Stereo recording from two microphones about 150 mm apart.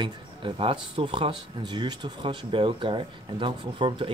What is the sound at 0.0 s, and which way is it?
Speech, 35° right (ahead or behind).